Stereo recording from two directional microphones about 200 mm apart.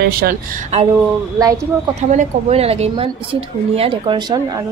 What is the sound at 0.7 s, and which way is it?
Speech, 35° right (ahead or behind).